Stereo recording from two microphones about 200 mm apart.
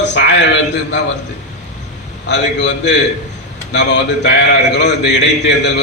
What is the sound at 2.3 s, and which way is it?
A man's voice, 60° left (ahead or behind).